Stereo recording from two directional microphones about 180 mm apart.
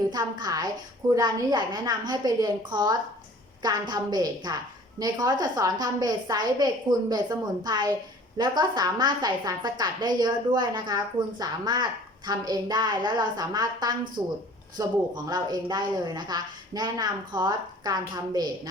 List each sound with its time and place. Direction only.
0.1 s a woman's voice: 25° right (ahead or behind)